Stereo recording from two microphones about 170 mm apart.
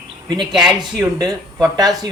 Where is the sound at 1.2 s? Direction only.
20° right (ahead or behind).